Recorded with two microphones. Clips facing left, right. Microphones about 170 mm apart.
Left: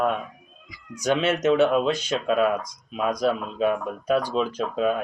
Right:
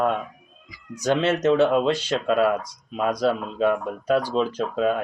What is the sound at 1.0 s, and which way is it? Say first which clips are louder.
Speech: right 1 dB; 15° left (ahead or behind).